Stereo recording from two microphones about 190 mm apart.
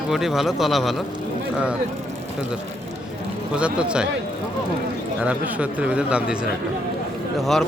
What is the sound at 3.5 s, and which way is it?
Speech, 5° right (ahead or behind).